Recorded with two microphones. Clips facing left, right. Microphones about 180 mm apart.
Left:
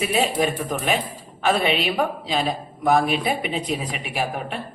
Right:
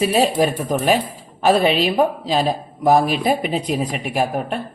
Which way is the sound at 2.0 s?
35° right (ahead or behind).